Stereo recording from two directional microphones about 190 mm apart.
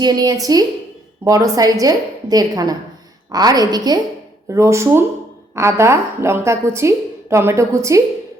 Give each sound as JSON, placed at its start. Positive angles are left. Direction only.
{"t": 0.0, "sound": "a woman's voice", "side_deg": -20}